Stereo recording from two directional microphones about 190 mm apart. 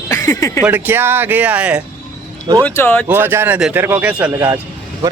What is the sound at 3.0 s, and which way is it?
A man's voice, 10° right (ahead or behind).